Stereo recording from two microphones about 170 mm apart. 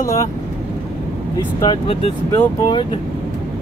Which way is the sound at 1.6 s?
30° left (ahead or behind).